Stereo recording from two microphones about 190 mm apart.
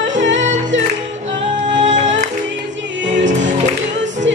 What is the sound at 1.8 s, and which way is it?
Music, 40° right (ahead or behind).